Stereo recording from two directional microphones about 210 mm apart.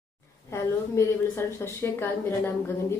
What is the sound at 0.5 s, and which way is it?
A woman's voice, 15° left (ahead or behind).